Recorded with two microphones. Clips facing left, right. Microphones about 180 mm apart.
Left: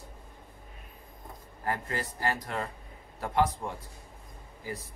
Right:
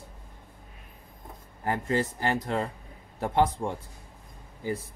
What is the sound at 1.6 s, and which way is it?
Speech, 25° right (ahead or behind).